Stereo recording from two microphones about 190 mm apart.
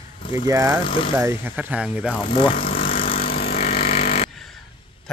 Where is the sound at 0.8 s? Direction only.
25° left (ahead or behind).